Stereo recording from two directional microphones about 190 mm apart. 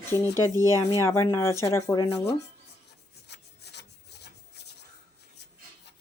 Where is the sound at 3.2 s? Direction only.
60° left (ahead or behind).